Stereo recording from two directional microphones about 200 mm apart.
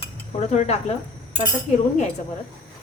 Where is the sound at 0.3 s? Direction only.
35° left (ahead or behind).